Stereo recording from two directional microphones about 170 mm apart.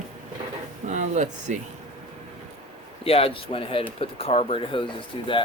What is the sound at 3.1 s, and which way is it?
Speech, 35° left (ahead or behind).